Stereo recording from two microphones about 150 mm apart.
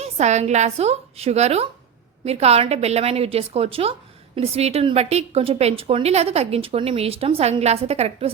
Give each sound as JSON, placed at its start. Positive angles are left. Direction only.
{"t": 0.0, "sound": "a woman's voice", "side_deg": -50}